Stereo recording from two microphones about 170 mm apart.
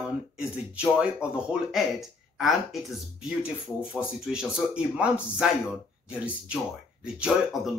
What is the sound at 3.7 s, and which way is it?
Speech, 20° left (ahead or behind).